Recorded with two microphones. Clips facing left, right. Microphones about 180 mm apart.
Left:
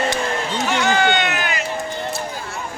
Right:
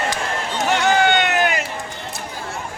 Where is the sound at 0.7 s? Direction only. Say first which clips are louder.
Right 2 dB; 55° right (ahead or behind).